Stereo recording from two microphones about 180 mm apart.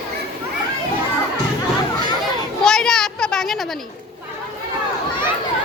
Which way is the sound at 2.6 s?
5° left (ahead or behind).